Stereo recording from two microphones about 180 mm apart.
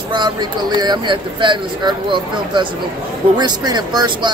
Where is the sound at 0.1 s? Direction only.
25° right (ahead or behind).